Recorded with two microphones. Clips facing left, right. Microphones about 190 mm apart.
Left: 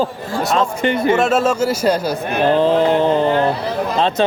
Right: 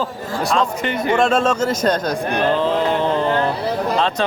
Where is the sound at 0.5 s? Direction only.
25° left (ahead or behind).